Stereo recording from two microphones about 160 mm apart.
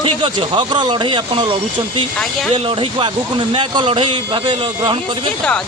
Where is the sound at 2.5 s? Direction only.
35° right (ahead or behind).